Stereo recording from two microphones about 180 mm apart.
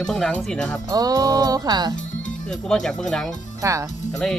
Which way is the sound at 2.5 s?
5° left (ahead or behind).